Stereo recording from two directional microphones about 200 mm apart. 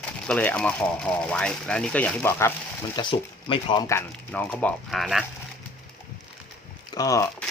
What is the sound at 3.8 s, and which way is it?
Speech, 10° left (ahead or behind).